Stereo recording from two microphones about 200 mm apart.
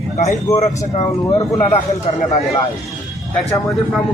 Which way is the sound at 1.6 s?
35° left (ahead or behind).